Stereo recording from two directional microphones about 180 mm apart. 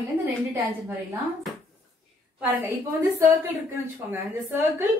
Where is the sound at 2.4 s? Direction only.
10° right (ahead or behind).